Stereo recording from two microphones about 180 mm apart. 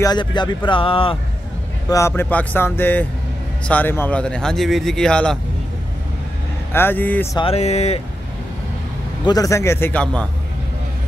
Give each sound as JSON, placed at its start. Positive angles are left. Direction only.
{"t": 0.0, "sound": "speech", "side_deg": 25}
{"t": 1.9, "sound": "speech", "side_deg": 15}
{"t": 6.7, "sound": "speech", "side_deg": 10}
{"t": 7.3, "sound": "a sound", "side_deg": 35}
{"t": 9.2, "sound": "speech", "side_deg": 20}